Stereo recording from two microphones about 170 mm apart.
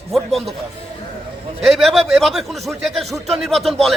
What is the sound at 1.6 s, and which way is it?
A man's voice, centre (ahead or behind).